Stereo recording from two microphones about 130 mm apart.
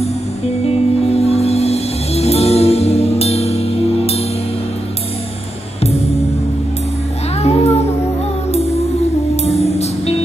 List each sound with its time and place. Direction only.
0.7 s music: 55° left (ahead or behind)
5.8 s music: 50° left (ahead or behind)
7.4 s music: 55° left (ahead or behind)
9.4 s music: 55° left (ahead or behind)